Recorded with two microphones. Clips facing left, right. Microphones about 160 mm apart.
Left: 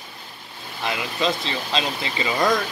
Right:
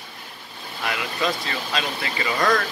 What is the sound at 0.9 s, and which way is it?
Speech, 25° left (ahead or behind).